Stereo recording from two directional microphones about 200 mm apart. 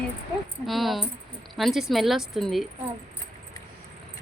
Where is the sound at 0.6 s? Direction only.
Centre (ahead or behind).